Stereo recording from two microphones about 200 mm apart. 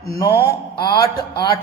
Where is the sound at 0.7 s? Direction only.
20° left (ahead or behind).